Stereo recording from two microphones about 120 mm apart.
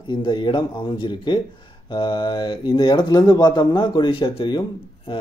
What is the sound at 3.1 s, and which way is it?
Speech, 35° left (ahead or behind).